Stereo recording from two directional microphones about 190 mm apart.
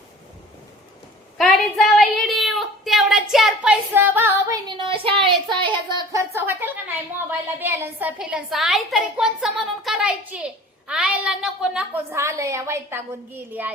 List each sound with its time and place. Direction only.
1.4 s a woman's voice: centre (ahead or behind); by 6.0 s 25° right (ahead or behind)
6.1 s a woman's voice: 15° right (ahead or behind)